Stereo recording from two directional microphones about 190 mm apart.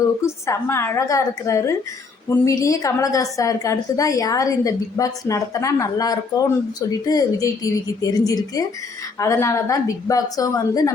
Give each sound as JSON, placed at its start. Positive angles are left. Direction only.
{"t": 0.0, "sound": "a woman's voice", "side_deg": 15}